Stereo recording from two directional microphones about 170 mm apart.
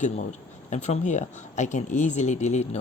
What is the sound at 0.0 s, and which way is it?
Speech, 45° left (ahead or behind).